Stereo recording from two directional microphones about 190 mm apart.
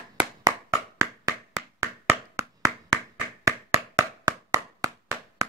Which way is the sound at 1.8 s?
15° right (ahead or behind).